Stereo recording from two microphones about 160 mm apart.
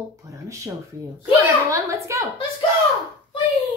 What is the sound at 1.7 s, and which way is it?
Speech, 20° right (ahead or behind).